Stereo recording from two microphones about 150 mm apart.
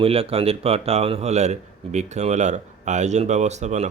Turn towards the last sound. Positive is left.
turn(degrees=-50)  # may be behind; listen again after turning